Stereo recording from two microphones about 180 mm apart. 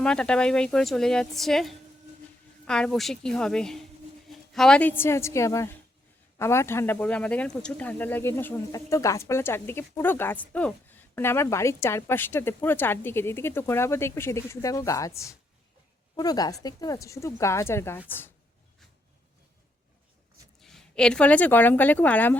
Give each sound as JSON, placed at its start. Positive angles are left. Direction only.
{"t": 0.0, "sound": "a woman's voice", "side_deg": 5}
{"t": 20.6, "sound": "speech", "side_deg": 0}